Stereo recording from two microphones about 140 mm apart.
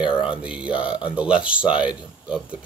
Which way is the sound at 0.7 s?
35° left (ahead or behind).